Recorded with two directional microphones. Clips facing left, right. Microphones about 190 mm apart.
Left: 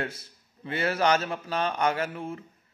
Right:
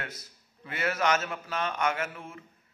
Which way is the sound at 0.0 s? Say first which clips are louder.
Left 8 dB; 30° left (ahead or behind).